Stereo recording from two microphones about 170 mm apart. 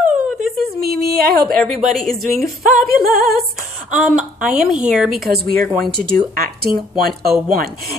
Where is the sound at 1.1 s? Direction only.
65° right (ahead or behind).